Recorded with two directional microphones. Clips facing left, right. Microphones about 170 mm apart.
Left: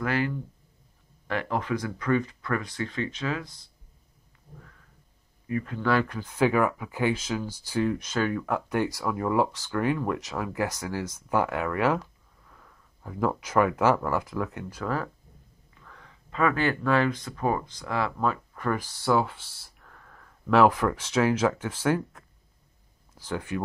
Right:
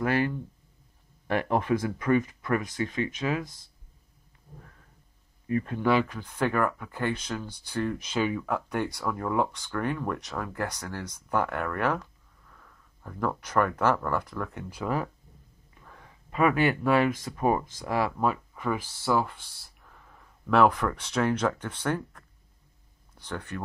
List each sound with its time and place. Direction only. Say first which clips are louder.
0.0 s speech: right 1 dB; 20° right (ahead or behind)
5.5 s speech: right 2 dB; 30° right (ahead or behind)
5.8 s speech: even; 10° right (ahead or behind)
6.1 s speech: left 4 dB; 5° left (ahead or behind)
8.1 s speech: left 1 dB; 5° right (ahead or behind)
14.7 s speech: right 5 dB; 10° right (ahead or behind)
15.7 s speech: even; 25° right (ahead or behind); by 23.6 s 5° left (ahead or behind)